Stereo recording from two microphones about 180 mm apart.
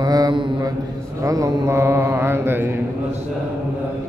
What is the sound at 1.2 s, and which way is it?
Speech, 20° right (ahead or behind).